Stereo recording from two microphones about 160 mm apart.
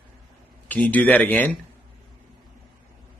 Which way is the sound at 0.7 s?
10° left (ahead or behind).